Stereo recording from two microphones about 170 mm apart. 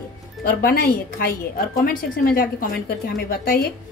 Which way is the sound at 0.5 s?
60° left (ahead or behind).